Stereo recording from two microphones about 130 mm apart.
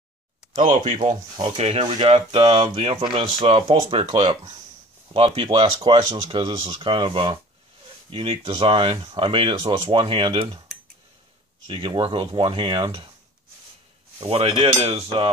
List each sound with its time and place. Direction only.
0.6 s speech: 90° right
1.8 s speech: 35° right (ahead or behind)
2.0 s speech: 50° right (ahead or behind)
2.4 s speech: 40° right (ahead or behind)
11.6 s speech: 40° right (ahead or behind)
14.2 s speech: 50° right (ahead or behind)